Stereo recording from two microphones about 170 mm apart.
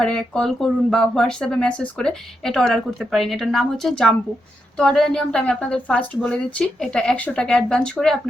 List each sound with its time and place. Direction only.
0.0 s speech: 5° left (ahead or behind)